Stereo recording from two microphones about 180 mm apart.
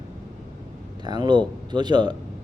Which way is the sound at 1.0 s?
25° right (ahead or behind).